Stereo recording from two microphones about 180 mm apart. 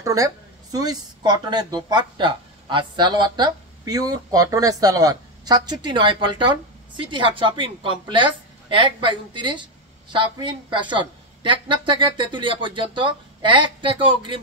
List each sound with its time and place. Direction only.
0.0 s a woman's voice: 20° right (ahead or behind)